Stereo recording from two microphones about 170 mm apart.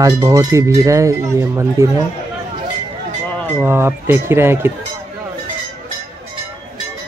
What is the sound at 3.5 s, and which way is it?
Speech, 15° right (ahead or behind).